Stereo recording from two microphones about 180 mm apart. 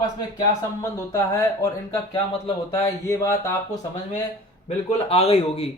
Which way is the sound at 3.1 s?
15° left (ahead or behind).